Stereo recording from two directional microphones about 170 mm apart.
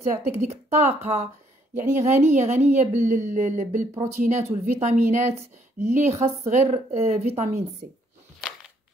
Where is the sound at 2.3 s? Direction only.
45° right (ahead or behind).